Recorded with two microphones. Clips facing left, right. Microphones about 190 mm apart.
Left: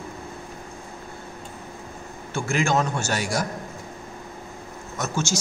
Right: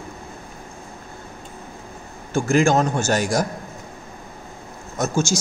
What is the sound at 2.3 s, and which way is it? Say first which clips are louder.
Speech: right 6 dB; 45° right (ahead or behind).